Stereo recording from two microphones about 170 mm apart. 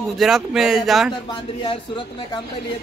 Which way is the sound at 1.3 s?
30° left (ahead or behind).